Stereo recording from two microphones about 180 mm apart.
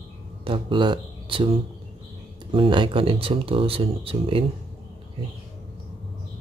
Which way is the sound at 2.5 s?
30° right (ahead or behind).